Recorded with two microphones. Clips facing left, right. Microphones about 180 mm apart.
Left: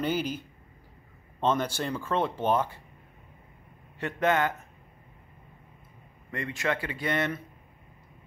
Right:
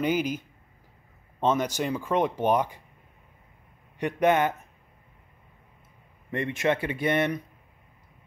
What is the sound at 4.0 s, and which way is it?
Speech, 20° right (ahead or behind).